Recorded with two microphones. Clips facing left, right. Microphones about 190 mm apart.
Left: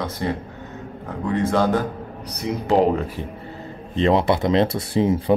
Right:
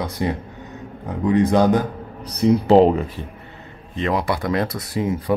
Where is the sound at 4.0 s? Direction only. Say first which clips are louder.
Left 4 dB; 25° left (ahead or behind).